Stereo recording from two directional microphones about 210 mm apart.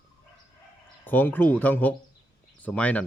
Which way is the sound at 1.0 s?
10° left (ahead or behind).